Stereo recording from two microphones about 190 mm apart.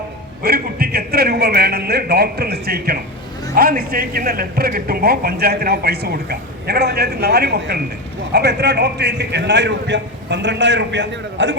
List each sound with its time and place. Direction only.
0.4 s a man's voice: 55° right (ahead or behind); by 11.5 s 70° right (ahead or behind)